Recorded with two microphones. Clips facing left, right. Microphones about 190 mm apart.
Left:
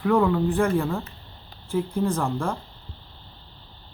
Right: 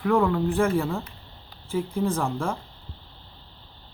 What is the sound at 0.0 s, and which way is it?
Speech, centre (ahead or behind).